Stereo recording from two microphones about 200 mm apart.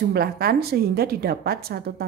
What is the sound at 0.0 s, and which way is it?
A woman's voice, 50° right (ahead or behind).